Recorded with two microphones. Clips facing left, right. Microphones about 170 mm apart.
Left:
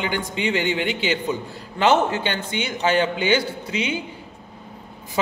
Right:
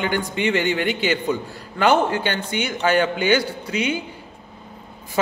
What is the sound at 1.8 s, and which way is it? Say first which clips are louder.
Speech: right 1 dB; 20° left (ahead or behind).